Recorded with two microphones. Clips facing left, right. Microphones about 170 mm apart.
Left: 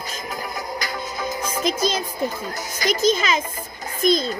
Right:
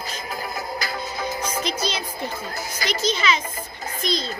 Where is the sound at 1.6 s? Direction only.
45° left (ahead or behind).